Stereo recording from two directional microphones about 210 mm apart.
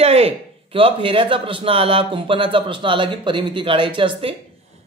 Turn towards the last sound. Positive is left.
turn(degrees=-25)  # may be behind; listen again after turning